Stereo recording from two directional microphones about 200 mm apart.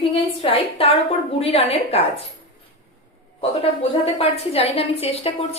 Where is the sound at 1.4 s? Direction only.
30° left (ahead or behind).